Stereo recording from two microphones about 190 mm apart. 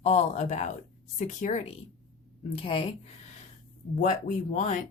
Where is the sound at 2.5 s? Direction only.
30° left (ahead or behind).